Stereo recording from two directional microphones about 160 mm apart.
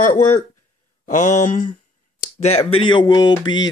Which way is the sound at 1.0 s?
55° left (ahead or behind).